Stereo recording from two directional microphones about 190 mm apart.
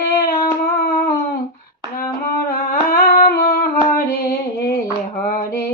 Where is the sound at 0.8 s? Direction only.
50° left (ahead or behind).